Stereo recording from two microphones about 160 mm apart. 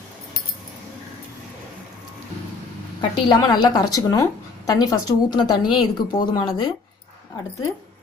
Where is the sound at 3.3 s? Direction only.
25° left (ahead or behind).